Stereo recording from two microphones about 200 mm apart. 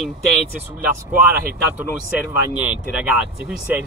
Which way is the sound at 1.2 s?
10° right (ahead or behind).